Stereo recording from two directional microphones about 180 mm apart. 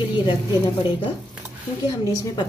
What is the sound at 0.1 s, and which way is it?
Speech, 25° left (ahead or behind).